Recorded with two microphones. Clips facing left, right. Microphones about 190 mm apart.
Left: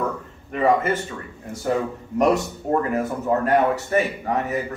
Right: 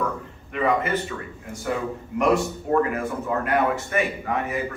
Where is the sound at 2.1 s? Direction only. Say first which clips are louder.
Left 2 dB; 40° left (ahead or behind).